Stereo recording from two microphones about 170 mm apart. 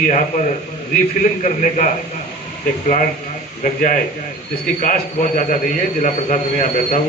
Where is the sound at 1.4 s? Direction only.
45° left (ahead or behind).